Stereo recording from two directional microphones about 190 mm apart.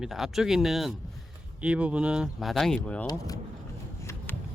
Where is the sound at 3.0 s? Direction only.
20° left (ahead or behind).